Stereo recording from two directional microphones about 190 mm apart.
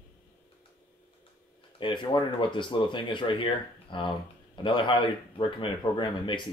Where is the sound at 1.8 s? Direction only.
25° left (ahead or behind).